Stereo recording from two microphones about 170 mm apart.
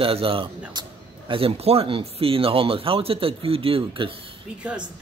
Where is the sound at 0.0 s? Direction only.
30° right (ahead or behind).